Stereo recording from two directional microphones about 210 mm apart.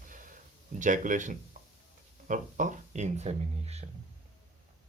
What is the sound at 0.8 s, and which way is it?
Speech, 40° right (ahead or behind).